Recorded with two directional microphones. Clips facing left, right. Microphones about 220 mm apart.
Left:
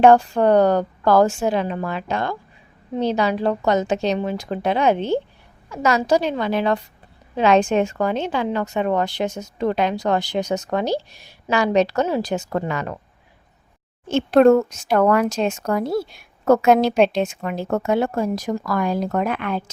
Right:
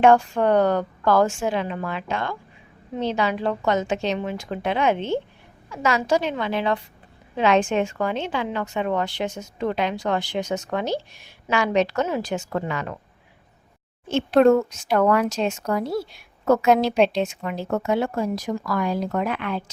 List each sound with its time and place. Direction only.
0.0 s a woman's voice: 40° left (ahead or behind)
14.1 s speech: 45° left (ahead or behind)